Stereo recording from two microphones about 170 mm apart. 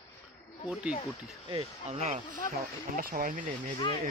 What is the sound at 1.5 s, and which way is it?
Speech, 40° right (ahead or behind).